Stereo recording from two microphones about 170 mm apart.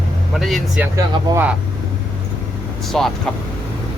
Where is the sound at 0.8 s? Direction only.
15° right (ahead or behind).